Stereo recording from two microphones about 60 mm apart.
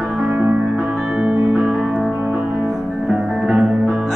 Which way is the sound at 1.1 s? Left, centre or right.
Centre.